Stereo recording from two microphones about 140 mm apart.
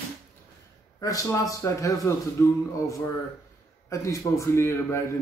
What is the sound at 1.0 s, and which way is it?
A man's voice, 25° left (ahead or behind).